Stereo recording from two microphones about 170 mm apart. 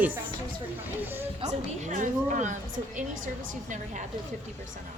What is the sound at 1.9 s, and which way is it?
A woman's voice, 45° right (ahead or behind).